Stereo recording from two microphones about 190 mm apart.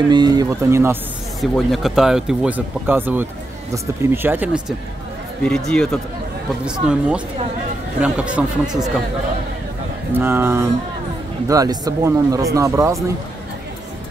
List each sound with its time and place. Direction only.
0.1 s speech: 20° right (ahead or behind)
1.4 s speech: centre (ahead or behind)
5.4 s speech: 5° left (ahead or behind)
10.1 s speech: 10° right (ahead or behind)